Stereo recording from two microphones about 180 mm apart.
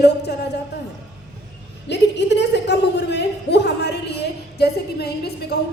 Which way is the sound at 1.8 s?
75° left (ahead or behind).